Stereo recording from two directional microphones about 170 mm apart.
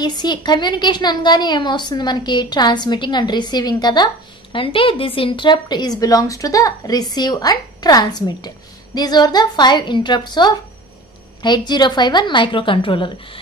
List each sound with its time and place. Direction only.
0.0 s a woman's voice: 25° left (ahead or behind)